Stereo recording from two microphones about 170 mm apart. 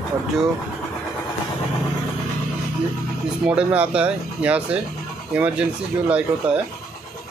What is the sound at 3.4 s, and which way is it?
Speech, 5° right (ahead or behind).